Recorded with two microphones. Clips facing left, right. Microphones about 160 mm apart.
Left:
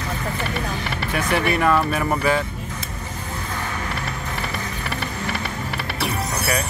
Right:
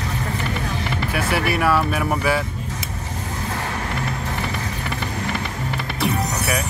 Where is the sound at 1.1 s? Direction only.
5° right (ahead or behind).